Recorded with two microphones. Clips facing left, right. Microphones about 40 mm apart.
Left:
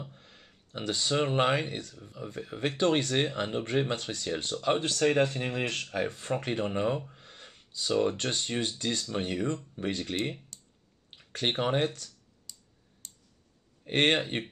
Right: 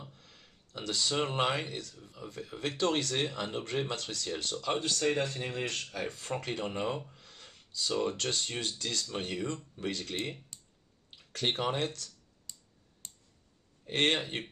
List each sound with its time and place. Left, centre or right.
0.1 s speech: left
7.2 s gasp: left
8.1 s speech: left
11.1 s speech: left
12.5 s finger snapping: right
13.0 s a sound: right
13.8 s speech: left